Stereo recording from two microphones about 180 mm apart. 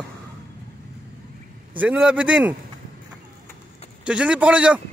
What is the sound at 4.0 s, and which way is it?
Speech, 5° right (ahead or behind).